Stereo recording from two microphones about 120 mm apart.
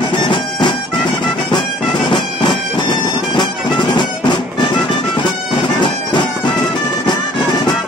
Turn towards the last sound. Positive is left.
turn(degrees=40)  # may be behind; listen again after turning